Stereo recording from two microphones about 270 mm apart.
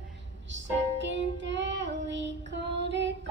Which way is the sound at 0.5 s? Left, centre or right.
Right.